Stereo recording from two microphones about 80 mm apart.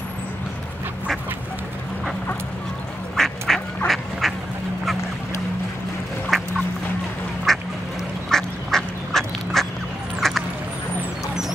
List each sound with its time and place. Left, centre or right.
3.2 s duck: centre
6.3 s duck: centre